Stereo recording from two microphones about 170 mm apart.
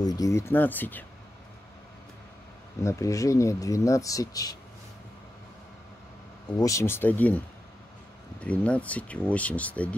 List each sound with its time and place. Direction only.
0.0 s speech: 20° left (ahead or behind)
2.8 s speech: 20° left (ahead or behind)
6.6 s speech: 15° left (ahead or behind)